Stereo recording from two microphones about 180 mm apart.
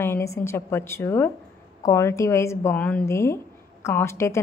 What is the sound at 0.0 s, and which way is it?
A woman's voice, 15° left (ahead or behind).